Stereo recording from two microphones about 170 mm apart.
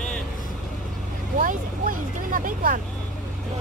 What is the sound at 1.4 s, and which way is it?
Vehicle, 50° right (ahead or behind).